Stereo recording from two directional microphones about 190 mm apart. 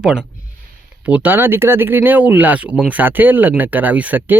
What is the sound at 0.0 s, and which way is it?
Speech, 5° right (ahead or behind).